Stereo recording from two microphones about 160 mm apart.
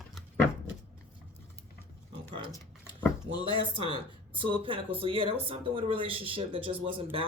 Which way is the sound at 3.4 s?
35° right (ahead or behind).